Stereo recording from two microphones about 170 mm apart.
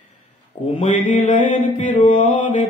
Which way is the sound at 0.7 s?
45° left (ahead or behind).